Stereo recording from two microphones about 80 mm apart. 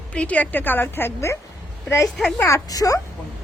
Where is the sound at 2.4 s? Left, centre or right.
Left.